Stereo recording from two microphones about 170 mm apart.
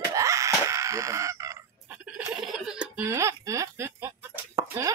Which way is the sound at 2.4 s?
5° right (ahead or behind).